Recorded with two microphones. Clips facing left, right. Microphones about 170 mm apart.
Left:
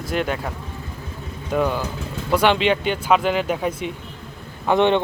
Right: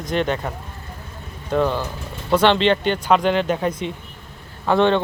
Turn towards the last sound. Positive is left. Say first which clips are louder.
# even
turn(degrees=15)  # may be behind; listen again after turning